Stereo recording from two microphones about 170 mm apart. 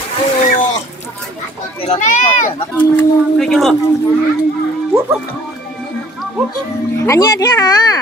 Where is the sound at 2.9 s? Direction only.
Centre (ahead or behind).